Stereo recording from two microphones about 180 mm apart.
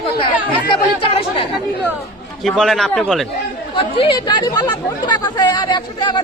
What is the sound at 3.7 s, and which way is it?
Speech, 25° left (ahead or behind).